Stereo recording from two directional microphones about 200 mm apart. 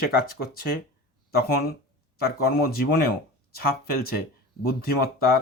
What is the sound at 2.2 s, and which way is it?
Speech, 50° left (ahead or behind).